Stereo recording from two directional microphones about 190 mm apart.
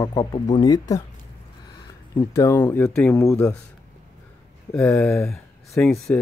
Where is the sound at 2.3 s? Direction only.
15° left (ahead or behind).